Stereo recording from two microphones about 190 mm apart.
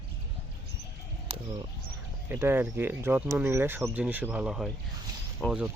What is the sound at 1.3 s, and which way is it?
Bird, 30° right (ahead or behind).